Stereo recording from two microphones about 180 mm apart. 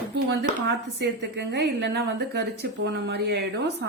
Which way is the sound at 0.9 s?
75° right (ahead or behind).